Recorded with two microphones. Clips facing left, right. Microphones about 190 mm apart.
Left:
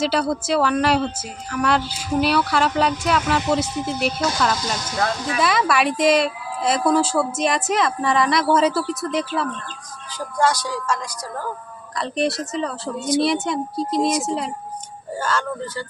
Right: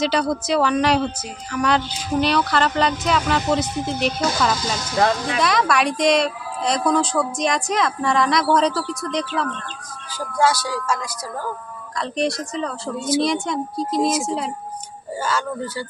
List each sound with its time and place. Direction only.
0.0 s speech: 5° left (ahead or behind)
10.2 s speech: 5° right (ahead or behind)